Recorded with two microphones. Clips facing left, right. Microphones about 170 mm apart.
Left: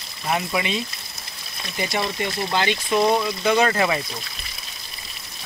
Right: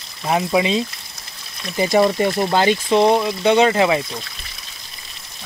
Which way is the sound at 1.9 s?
45° right (ahead or behind).